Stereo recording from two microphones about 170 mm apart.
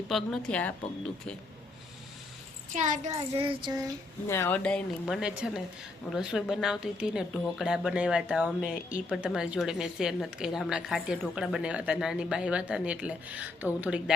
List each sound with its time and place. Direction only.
0.1 s speech: 5° left (ahead or behind)
2.7 s a child's voice: 45° right (ahead or behind)
3.3 s child singing: 30° right (ahead or behind)
4.3 s speech: 15° left (ahead or behind); by 13.7 s 10° right (ahead or behind)